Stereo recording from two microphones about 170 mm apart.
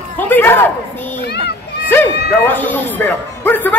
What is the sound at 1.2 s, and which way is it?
Children playing, 75° left (ahead or behind).